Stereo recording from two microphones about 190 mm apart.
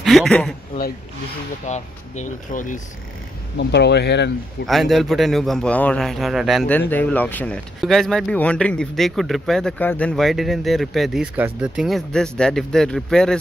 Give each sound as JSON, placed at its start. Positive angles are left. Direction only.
{"t": 0.0, "sound": "speech", "side_deg": 0}
{"t": 1.7, "sound": "speech", "side_deg": 40}
{"t": 3.5, "sound": "speech", "side_deg": 60}
{"t": 4.6, "sound": "speech", "side_deg": 0}